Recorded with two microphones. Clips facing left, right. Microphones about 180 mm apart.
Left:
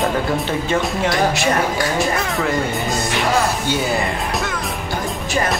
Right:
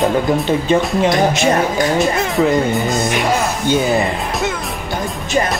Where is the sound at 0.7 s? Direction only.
20° right (ahead or behind).